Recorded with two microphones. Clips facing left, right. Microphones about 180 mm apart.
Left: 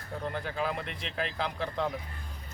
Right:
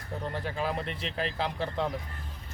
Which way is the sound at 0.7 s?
35° right (ahead or behind).